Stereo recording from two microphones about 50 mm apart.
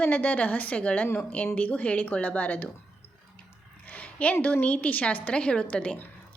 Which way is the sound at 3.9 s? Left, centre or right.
Left.